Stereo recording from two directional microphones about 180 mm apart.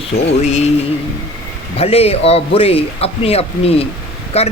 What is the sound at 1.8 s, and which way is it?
Speech, 35° left (ahead or behind).